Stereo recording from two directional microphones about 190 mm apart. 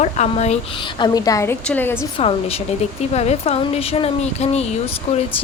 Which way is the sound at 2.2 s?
30° left (ahead or behind).